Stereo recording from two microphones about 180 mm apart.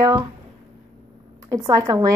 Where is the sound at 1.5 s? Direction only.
20° right (ahead or behind).